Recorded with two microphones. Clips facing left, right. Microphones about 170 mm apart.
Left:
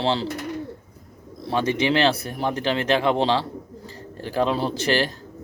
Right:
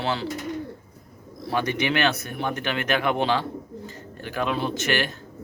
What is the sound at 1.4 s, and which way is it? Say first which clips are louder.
Speech: left 3 dB; 25° left (ahead or behind).